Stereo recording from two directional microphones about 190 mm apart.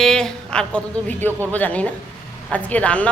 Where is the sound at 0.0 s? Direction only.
5° left (ahead or behind).